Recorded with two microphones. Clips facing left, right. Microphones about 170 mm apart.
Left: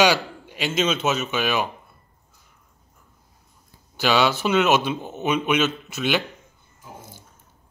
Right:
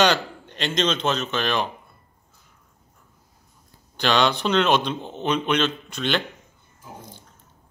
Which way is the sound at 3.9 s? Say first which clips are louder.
Left 1 dB; 5° left (ahead or behind).